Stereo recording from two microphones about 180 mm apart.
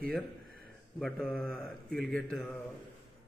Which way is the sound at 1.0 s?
Centre (ahead or behind).